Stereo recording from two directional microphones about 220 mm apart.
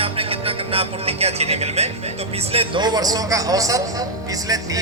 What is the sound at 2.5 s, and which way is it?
A man's voice, 25° right (ahead or behind).